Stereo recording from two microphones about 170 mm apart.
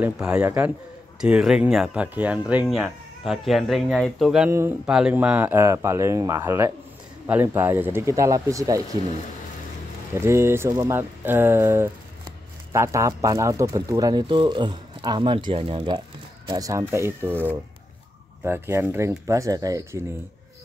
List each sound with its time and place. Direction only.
0.0 s speech: 5° right (ahead or behind)
4.5 s speech: 15° right (ahead or behind)
4.8 s speech: 5° right (ahead or behind)
10.1 s speech: 15° right (ahead or behind)